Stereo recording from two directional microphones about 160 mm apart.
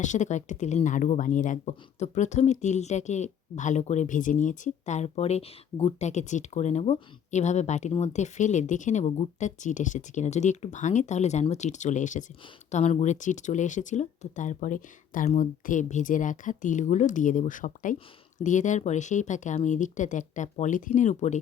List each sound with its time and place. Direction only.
0.0 s speech: 50° left (ahead or behind)